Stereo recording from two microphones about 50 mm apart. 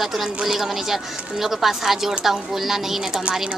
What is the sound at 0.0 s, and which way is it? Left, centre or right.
A woman's voice, centre.